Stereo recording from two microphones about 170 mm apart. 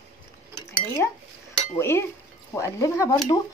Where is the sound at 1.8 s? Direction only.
15° left (ahead or behind).